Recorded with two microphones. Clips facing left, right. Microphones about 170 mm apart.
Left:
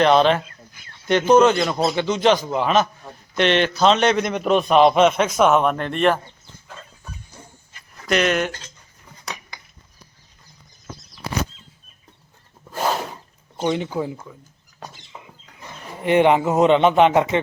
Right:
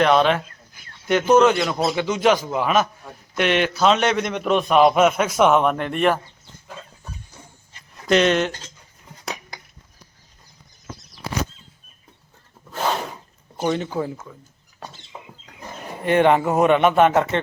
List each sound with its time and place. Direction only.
0.0 s a man's voice: centre (ahead or behind)
7.7 s dog: 25° right (ahead or behind)
12.7 s a sound: 10° left (ahead or behind)
13.7 s speech: 10° left (ahead or behind)
16.0 s speech: 15° left (ahead or behind)